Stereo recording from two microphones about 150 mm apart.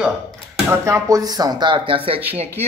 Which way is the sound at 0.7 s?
20° right (ahead or behind).